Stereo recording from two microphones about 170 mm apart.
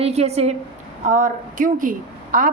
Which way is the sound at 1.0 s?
50° right (ahead or behind).